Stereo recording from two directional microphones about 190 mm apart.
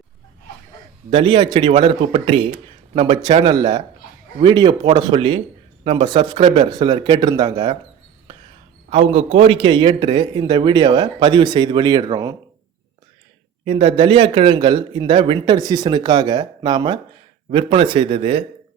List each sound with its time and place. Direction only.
1.1 s a man's voice: 25° right (ahead or behind)
8.9 s a man's voice: 35° right (ahead or behind)
13.7 s a man's voice: 30° right (ahead or behind)